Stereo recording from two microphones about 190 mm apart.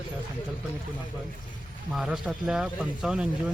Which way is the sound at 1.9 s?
Centre (ahead or behind).